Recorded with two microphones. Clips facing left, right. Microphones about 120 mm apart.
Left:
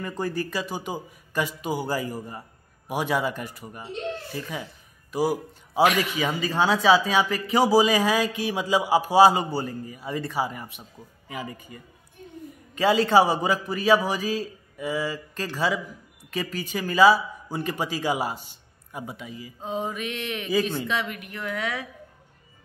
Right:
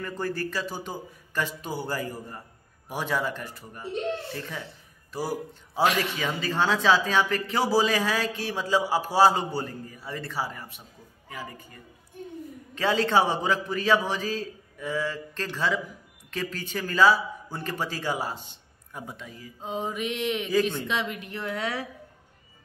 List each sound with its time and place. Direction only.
0.0 s a man's voice: 15° left (ahead or behind)
19.9 s a woman's voice: 20° right (ahead or behind)